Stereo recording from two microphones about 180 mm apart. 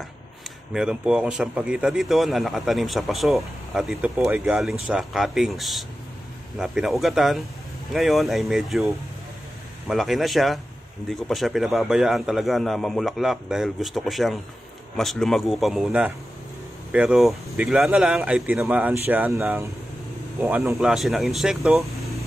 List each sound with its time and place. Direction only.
0.7 s speech: 5° right (ahead or behind)